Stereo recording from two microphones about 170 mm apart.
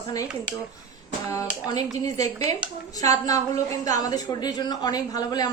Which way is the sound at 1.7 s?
20° left (ahead or behind).